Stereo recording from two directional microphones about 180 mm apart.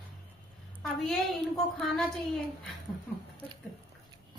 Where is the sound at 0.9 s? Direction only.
Centre (ahead or behind).